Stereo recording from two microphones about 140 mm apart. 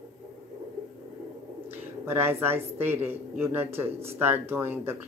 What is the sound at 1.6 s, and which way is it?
A woman's voice, 15° right (ahead or behind).